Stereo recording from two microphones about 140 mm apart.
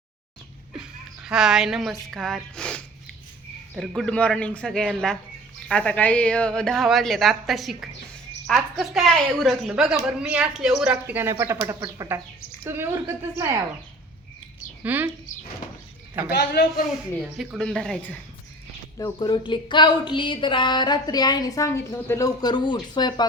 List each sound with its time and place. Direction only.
0.8 s a woman's voice: 5° right (ahead or behind)
11.0 s a woman's voice: 15° right (ahead or behind)
14.8 s a woman's voice: 10° right (ahead or behind)
16.4 s a man's voice: 85° left
17.2 s a woman's voice: 5° right (ahead or behind)
18.9 s a woman's voice: 30° left (ahead or behind)
22.4 s a woman's voice: 30° left (ahead or behind)